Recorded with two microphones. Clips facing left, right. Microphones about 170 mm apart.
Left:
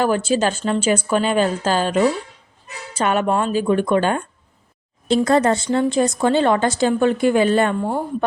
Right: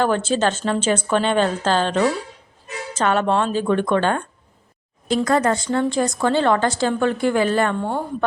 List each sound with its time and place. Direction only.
0.0 s speech: 10° left (ahead or behind)
5.0 s a woman's voice: 25° left (ahead or behind)
7.8 s speech: 5° left (ahead or behind)